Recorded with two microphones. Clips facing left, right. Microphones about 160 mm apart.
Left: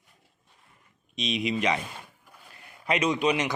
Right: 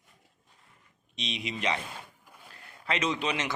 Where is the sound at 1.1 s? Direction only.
35° right (ahead or behind).